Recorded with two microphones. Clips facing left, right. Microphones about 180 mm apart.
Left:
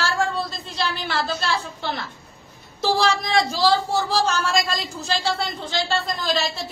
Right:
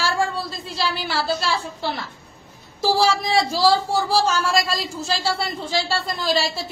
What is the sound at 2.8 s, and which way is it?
A woman's voice, 5° right (ahead or behind).